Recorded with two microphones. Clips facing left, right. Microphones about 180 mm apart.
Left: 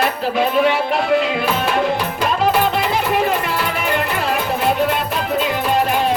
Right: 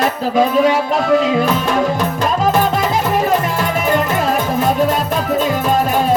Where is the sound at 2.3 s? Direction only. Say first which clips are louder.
Even; 45° right (ahead or behind).